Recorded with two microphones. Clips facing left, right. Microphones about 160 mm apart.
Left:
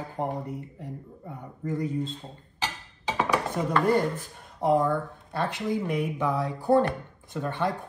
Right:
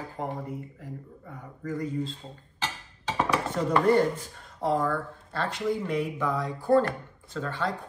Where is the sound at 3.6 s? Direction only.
10° left (ahead or behind).